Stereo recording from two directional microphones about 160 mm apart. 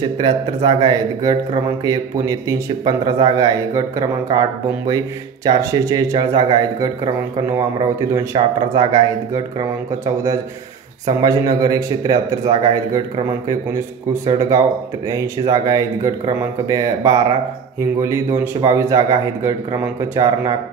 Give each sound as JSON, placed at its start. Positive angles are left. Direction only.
{"t": 0.2, "sound": "speech", "side_deg": -30}
{"t": 8.1, "sound": "speech", "side_deg": -20}
{"t": 11.2, "sound": "speech", "side_deg": -25}
{"t": 14.2, "sound": "speech", "side_deg": -25}